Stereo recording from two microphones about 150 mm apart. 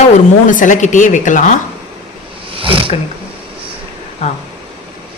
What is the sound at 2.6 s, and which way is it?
Roaring cats, 35° right (ahead or behind).